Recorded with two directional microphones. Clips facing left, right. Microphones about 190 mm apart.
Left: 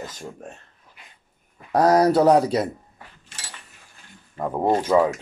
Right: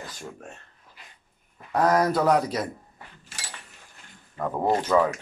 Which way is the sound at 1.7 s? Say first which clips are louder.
Left 5 dB; 35° left (ahead or behind).